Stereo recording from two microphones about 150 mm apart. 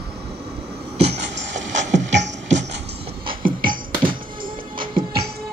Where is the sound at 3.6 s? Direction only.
35° right (ahead or behind).